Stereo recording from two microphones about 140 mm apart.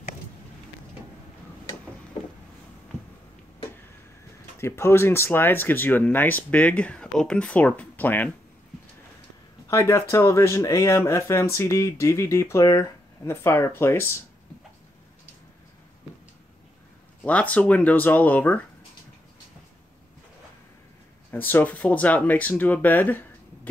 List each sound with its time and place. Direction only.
4.6 s speech: 20° left (ahead or behind)
9.7 s speech: 20° left (ahead or behind)
17.2 s speech: 10° left (ahead or behind)
21.3 s speech: 15° left (ahead or behind)